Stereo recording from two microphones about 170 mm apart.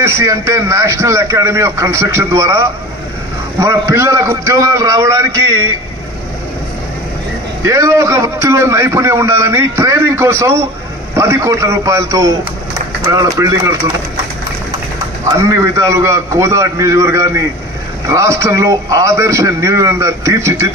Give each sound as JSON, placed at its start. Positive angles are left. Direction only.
{"t": 0.0, "sound": "a man's voice", "side_deg": -15}
{"t": 7.6, "sound": "a man's voice", "side_deg": -20}
{"t": 15.3, "sound": "a man's voice", "side_deg": -15}